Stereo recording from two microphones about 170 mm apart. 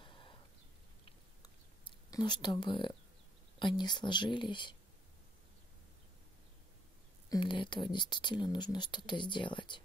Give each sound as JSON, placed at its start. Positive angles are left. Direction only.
{"t": 0.0, "sound": "a sound", "side_deg": 30}
{"t": 1.0, "sound": "chewing", "side_deg": 25}
{"t": 3.5, "sound": "speech", "side_deg": 25}
{"t": 7.2, "sound": "speech", "side_deg": 25}